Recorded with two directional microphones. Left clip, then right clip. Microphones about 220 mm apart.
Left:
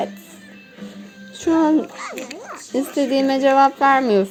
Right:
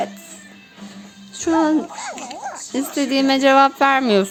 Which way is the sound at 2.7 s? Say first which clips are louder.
Left 2 dB; 15° right (ahead or behind).